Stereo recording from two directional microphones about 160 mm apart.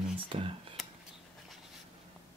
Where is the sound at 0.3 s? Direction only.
35° right (ahead or behind).